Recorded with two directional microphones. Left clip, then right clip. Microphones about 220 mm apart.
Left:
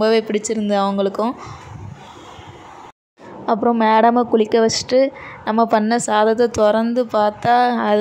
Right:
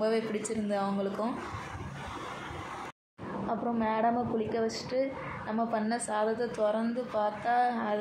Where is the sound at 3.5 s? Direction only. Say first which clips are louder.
Left 17 dB; 45° left (ahead or behind).